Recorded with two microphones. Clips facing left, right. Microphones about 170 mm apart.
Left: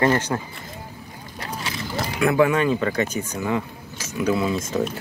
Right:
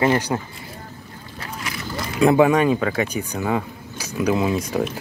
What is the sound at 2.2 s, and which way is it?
Speech, 20° right (ahead or behind).